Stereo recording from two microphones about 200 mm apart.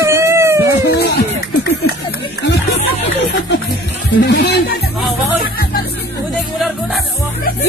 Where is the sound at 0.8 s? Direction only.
55° left (ahead or behind).